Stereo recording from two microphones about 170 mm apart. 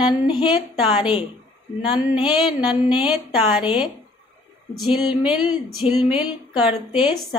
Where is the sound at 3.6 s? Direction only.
25° left (ahead or behind).